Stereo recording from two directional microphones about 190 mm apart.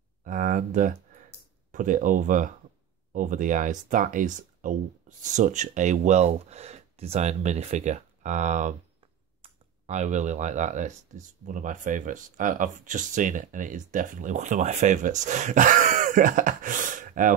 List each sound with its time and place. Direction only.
0.2 s speech: 45° right (ahead or behind)